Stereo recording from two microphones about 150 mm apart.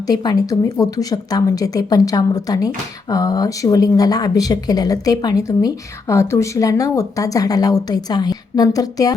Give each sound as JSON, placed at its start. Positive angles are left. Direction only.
{"t": 0.1, "sound": "a woman's voice", "side_deg": 25}